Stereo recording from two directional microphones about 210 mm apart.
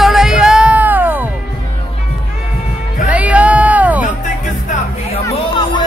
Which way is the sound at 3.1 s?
5° right (ahead or behind).